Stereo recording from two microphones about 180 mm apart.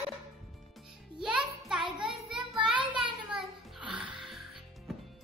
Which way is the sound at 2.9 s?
5° right (ahead or behind).